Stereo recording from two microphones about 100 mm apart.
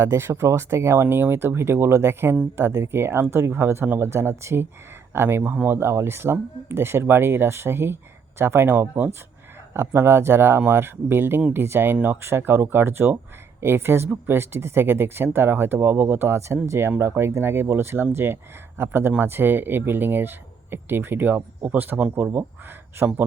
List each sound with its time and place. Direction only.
0.0 s speech: 25° right (ahead or behind)